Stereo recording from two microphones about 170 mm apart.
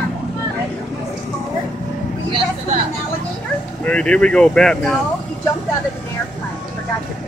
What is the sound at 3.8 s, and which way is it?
Speech, 5° left (ahead or behind).